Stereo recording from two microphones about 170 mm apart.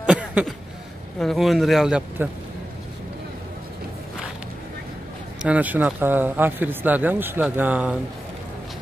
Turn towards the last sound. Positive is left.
turn(degrees=-10)  # may be behind; listen again after turning